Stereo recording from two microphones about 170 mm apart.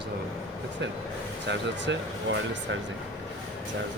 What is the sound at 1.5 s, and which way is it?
Speech, 90° right.